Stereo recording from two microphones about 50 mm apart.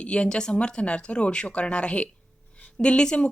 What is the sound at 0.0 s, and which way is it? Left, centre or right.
A woman's voice, left.